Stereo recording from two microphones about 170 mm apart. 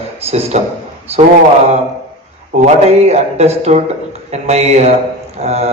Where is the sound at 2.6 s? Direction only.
40° right (ahead or behind).